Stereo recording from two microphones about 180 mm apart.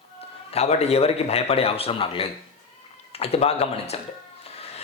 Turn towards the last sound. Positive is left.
turn(degrees=35)  # may be behind; listen again after turning